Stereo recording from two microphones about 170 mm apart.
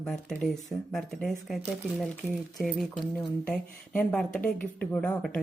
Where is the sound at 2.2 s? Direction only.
15° left (ahead or behind).